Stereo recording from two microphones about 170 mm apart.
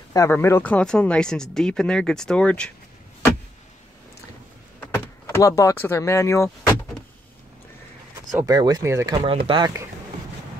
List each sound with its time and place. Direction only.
0.1 s speech: 15° left (ahead or behind)
4.7 s speech: 15° left (ahead or behind)
8.5 s speech: 20° right (ahead or behind)